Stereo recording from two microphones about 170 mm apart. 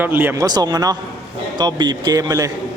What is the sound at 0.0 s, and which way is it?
Speech, 10° right (ahead or behind).